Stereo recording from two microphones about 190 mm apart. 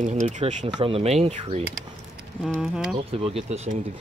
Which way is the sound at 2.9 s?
30° right (ahead or behind).